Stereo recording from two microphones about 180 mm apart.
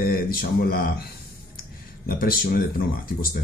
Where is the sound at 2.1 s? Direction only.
55° left (ahead or behind).